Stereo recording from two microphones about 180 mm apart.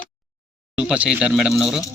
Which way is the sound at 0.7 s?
5° right (ahead or behind).